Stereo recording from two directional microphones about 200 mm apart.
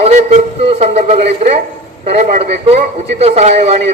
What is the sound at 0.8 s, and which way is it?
A man's voice, 35° right (ahead or behind).